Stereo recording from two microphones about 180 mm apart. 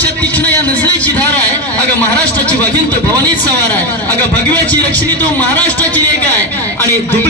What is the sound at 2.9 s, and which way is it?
A man's voice, 10° left (ahead or behind).